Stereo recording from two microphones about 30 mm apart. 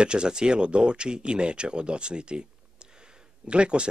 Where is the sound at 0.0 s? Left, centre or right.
Right.